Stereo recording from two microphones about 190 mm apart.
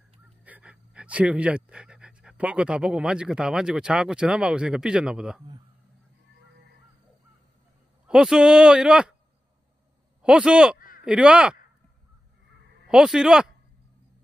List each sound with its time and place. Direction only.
0.4 s speech: 5° right (ahead or behind)
8.1 s speech: 5° right (ahead or behind)
10.2 s speech: 5° right (ahead or behind)
10.8 s a sound: 45° left (ahead or behind)
11.1 s speech: 5° right (ahead or behind)
12.8 s speech: centre (ahead or behind)